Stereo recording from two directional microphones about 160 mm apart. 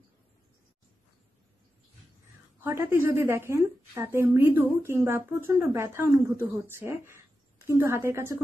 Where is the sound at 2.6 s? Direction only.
15° right (ahead or behind).